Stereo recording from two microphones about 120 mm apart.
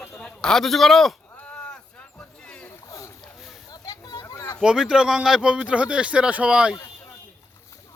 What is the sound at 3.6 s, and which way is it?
Children playing, 30° left (ahead or behind).